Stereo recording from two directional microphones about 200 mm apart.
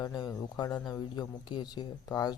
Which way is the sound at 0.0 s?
20° left (ahead or behind).